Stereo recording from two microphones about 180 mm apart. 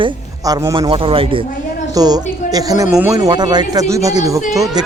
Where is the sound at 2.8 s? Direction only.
10° right (ahead or behind).